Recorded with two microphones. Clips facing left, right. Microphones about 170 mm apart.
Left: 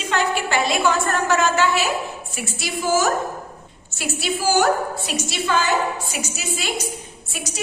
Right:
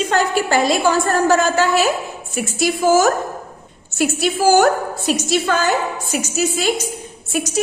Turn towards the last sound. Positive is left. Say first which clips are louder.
# right 10 dB
turn(degrees=-45)  # may be behind; listen again after turning